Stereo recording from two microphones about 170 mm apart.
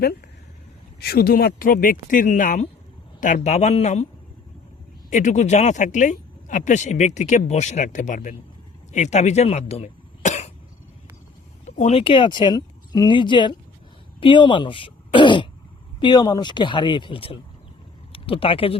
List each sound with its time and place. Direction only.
0.9 s speech: 65° left (ahead or behind); by 4.0 s 40° left (ahead or behind)
5.1 s speech: 45° left (ahead or behind)
11.6 s speech: 40° left (ahead or behind)